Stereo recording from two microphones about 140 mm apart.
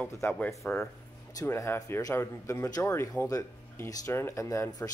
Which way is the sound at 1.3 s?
20° left (ahead or behind).